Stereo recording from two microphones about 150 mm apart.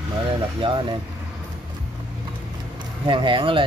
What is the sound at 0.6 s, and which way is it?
Speech, 35° right (ahead or behind).